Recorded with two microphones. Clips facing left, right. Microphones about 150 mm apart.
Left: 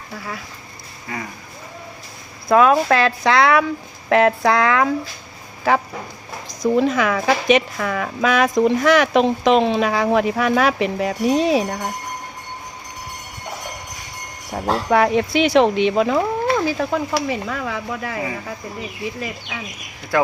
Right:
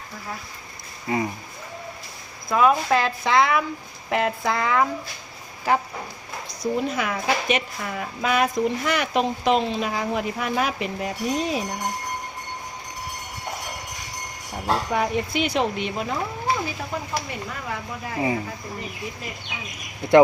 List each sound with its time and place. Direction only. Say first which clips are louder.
1.1 s speech: right 6 dB; 20° right (ahead or behind)
2.5 s speech: left 5 dB; 90° left
6.6 s speech: left 8 dB; 90° left
14.5 s speech: left 6 dB; 90° left